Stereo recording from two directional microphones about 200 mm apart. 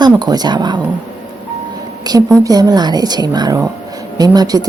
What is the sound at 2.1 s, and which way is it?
Speech, 20° right (ahead or behind).